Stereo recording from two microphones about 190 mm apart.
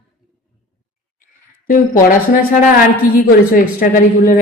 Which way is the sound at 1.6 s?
45° left (ahead or behind).